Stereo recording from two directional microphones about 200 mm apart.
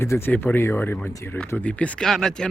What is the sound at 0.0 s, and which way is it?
Speech, 10° left (ahead or behind).